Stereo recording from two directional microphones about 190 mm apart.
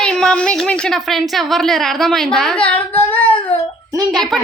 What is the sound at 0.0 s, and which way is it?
A woman's voice, 5° left (ahead or behind).